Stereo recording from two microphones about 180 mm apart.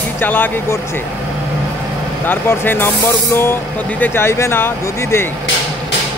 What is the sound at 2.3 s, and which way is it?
Speech, 10° left (ahead or behind).